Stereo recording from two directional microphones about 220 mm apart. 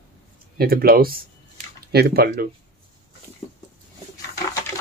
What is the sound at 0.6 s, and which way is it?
Speech, 45° right (ahead or behind).